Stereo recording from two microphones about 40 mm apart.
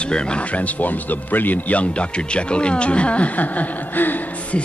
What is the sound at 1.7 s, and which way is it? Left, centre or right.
Speech, left.